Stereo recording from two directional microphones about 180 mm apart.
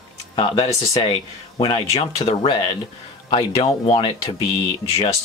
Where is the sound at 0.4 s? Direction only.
30° left (ahead or behind).